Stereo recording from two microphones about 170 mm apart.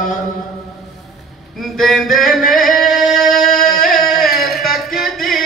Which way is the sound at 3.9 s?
Centre (ahead or behind).